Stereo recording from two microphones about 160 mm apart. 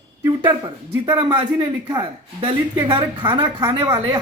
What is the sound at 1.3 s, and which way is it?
Speech, 25° right (ahead or behind).